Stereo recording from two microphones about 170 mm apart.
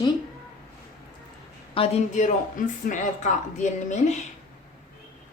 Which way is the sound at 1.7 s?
35° left (ahead or behind).